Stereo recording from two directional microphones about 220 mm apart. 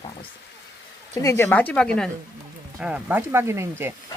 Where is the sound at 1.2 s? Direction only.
15° left (ahead or behind).